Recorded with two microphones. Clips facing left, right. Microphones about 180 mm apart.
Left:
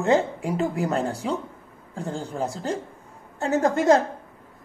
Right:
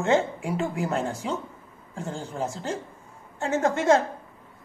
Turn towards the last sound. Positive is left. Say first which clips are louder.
# left 2 dB
turn(degrees=40)  # may be behind; listen again after turning